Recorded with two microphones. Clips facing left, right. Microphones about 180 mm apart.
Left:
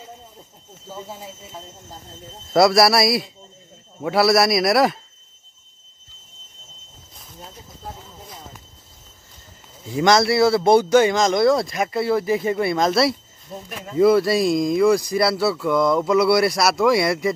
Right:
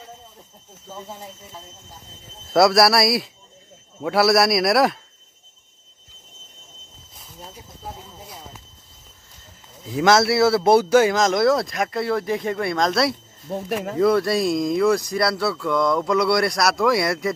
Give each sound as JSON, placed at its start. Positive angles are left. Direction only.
{"t": 0.8, "sound": "speech", "side_deg": 10}
{"t": 2.5, "sound": "speech", "side_deg": 0}
{"t": 7.2, "sound": "speech", "side_deg": 0}
{"t": 9.8, "sound": "speech", "side_deg": -5}
{"t": 13.5, "sound": "speech", "side_deg": -70}
{"t": 13.9, "sound": "speech", "side_deg": 5}